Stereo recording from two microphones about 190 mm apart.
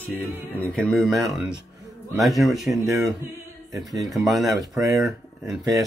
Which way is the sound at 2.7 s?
15° right (ahead or behind).